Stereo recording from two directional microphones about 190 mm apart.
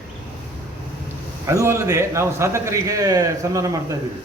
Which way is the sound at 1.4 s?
15° right (ahead or behind).